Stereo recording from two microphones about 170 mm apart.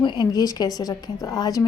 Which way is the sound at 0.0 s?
25° left (ahead or behind).